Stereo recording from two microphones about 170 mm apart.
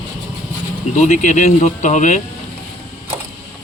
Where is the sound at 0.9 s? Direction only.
45° left (ahead or behind).